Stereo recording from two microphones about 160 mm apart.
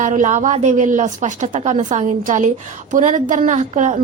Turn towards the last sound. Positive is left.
turn(degrees=-45)  # may be behind; listen again after turning